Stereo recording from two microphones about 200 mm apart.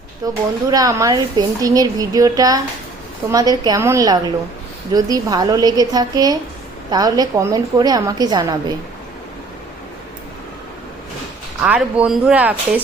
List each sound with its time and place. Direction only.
0.2 s a woman's voice: 20° right (ahead or behind)
11.6 s a woman's voice: 5° right (ahead or behind)